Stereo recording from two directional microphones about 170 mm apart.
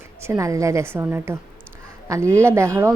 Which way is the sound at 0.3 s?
20° right (ahead or behind).